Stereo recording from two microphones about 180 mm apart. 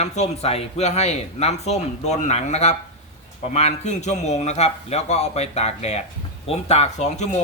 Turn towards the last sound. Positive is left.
turn(degrees=40)  # may be behind; listen again after turning